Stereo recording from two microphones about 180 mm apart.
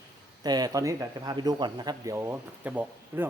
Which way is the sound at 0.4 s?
20° right (ahead or behind).